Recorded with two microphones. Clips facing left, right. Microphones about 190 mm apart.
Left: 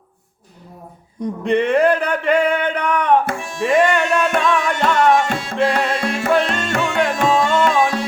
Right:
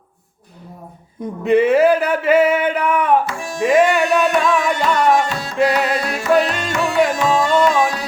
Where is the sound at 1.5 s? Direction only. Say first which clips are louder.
Right 3 dB; 5° right (ahead or behind).